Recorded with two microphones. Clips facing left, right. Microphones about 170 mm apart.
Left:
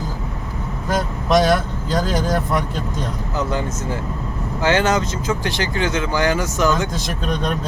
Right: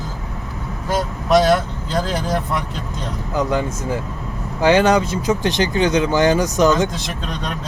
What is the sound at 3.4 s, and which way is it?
Speech, 15° right (ahead or behind).